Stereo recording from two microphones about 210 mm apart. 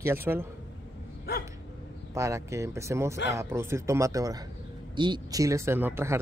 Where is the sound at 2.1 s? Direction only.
15° right (ahead or behind).